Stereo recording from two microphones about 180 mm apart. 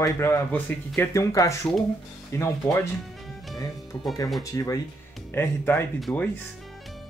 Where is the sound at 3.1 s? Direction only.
Centre (ahead or behind).